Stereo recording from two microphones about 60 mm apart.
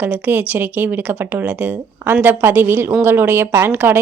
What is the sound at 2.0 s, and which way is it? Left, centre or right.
A woman's voice, right.